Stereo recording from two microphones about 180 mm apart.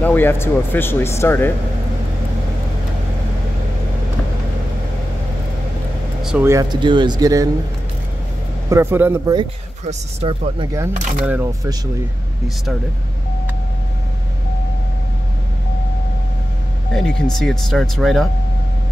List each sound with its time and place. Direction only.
0.0 s speech: 10° left (ahead or behind)
6.2 s speech: 10° right (ahead or behind)
8.6 s speech: 15° right (ahead or behind)
9.8 s speech: 30° right (ahead or behind)
11.2 s speech: 10° right (ahead or behind)
16.9 s speech: centre (ahead or behind)